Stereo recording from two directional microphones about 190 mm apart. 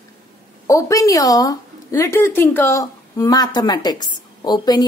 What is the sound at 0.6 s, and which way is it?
A woman's voice, 15° left (ahead or behind).